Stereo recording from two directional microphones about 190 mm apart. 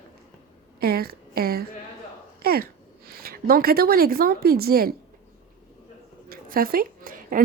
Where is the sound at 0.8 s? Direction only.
55° right (ahead or behind).